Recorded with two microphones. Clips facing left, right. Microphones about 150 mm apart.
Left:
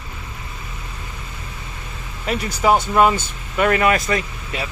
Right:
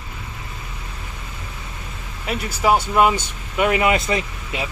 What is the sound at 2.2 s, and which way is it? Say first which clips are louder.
Speech: left 2 dB; 5° right (ahead or behind).